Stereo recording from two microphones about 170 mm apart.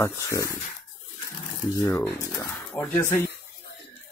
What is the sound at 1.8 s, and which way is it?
Speech, 15° left (ahead or behind).